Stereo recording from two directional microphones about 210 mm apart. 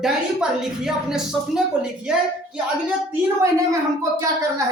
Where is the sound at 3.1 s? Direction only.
15° right (ahead or behind).